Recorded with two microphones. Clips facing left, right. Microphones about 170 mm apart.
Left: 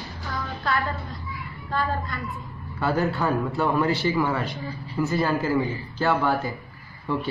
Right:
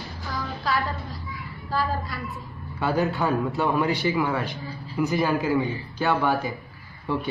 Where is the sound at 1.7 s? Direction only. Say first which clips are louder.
Even; 5° right (ahead or behind).